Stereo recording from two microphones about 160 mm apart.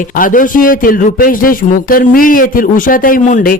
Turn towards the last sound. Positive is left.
turn(degrees=60)  # may be behind; listen again after turning